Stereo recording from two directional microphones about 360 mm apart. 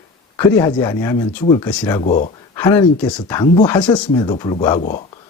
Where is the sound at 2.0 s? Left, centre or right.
Centre.